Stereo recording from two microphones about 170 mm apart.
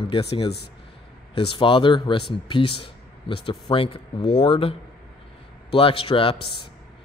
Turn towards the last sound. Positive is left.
turn(degrees=30)  # may be behind; listen again after turning